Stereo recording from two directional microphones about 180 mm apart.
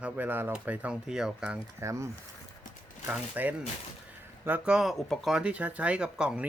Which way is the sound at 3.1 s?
10° right (ahead or behind).